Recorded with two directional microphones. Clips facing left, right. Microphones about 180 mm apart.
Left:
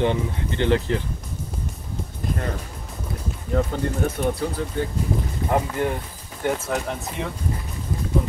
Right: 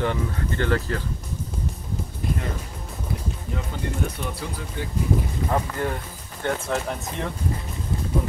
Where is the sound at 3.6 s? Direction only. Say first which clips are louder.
Left 8 dB; 45° left (ahead or behind).